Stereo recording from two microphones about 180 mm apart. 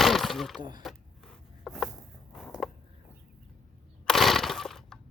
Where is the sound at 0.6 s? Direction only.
25° right (ahead or behind).